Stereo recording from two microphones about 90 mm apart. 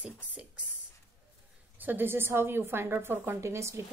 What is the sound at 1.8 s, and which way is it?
A woman's voice, 20° right (ahead or behind).